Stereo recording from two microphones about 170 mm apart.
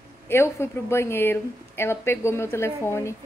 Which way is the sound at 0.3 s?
15° left (ahead or behind).